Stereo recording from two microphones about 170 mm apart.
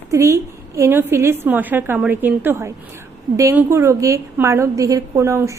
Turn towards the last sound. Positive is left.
turn(degrees=-15)  # may be behind; listen again after turning